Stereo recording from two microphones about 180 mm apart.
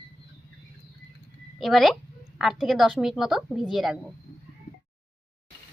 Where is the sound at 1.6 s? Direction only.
Centre (ahead or behind).